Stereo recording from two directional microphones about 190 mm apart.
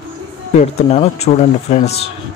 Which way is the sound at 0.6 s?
35° left (ahead or behind).